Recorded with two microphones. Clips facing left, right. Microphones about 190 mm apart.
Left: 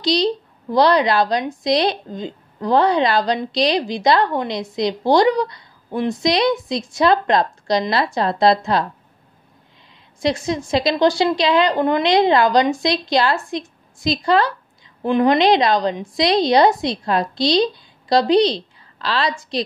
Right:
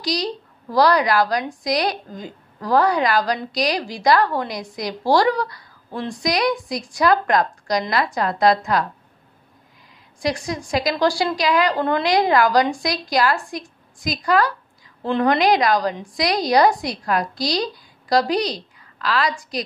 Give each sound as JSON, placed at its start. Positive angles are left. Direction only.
{"t": 0.0, "sound": "a woman's voice", "side_deg": 25}
{"t": 10.2, "sound": "a woman's voice", "side_deg": 25}